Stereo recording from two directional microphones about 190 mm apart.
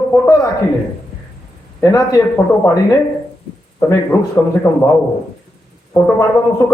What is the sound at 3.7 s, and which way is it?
Speech, 10° left (ahead or behind).